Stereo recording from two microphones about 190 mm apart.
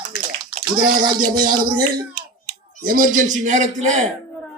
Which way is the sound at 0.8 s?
50° right (ahead or behind).